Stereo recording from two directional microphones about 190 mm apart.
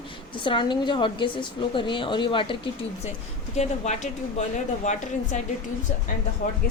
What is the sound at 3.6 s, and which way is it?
Speech, 35° left (ahead or behind).